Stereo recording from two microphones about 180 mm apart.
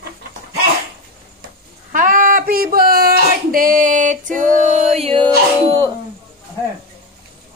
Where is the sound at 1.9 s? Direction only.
50° right (ahead or behind).